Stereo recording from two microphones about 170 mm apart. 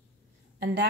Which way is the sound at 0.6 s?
70° right (ahead or behind).